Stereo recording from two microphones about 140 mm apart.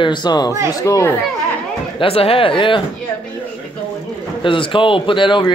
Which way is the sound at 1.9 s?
45° left (ahead or behind).